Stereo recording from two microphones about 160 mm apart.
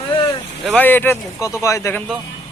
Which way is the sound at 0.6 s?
10° left (ahead or behind).